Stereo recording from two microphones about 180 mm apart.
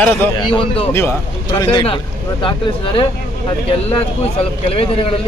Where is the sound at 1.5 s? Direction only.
25° left (ahead or behind).